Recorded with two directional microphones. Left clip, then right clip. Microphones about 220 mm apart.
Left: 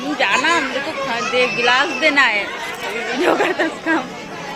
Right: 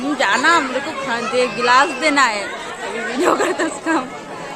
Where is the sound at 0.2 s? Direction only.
20° right (ahead or behind).